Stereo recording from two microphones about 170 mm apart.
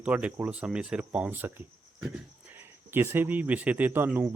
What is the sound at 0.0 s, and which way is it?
Speech, 5° right (ahead or behind).